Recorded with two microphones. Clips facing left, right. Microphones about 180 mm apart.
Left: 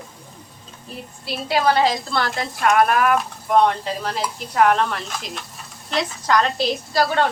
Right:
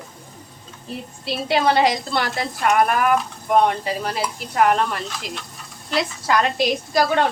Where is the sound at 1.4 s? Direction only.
20° right (ahead or behind).